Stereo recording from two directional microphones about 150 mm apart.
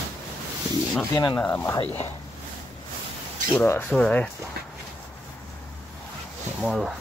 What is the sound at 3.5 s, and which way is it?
Speech, 15° left (ahead or behind).